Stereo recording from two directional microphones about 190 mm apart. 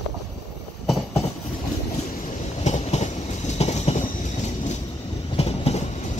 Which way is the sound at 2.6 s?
35° left (ahead or behind).